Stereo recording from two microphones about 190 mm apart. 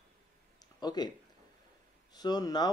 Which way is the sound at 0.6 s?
20° left (ahead or behind).